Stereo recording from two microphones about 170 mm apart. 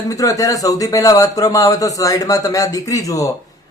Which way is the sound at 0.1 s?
20° left (ahead or behind).